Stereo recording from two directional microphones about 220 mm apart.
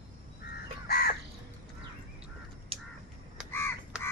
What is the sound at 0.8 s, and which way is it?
Crow, 45° left (ahead or behind).